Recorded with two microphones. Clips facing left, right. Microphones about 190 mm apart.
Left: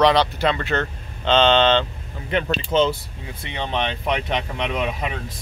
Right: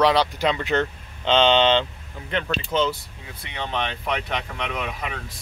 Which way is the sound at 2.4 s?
25° left (ahead or behind).